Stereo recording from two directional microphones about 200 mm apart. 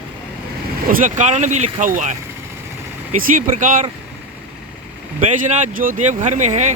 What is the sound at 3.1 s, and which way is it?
Speech, 40° right (ahead or behind).